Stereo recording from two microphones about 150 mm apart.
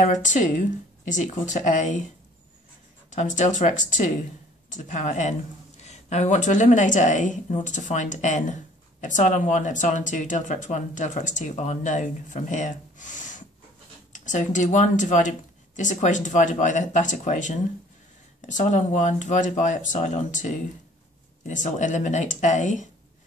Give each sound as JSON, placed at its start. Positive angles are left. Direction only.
{"t": 0.0, "sound": "speech", "side_deg": 55}
{"t": 3.1, "sound": "speech", "side_deg": 55}